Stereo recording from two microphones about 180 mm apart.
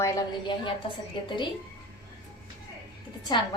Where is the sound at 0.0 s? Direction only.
25° left (ahead or behind).